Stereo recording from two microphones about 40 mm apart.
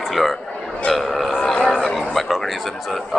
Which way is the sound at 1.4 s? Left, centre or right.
Centre.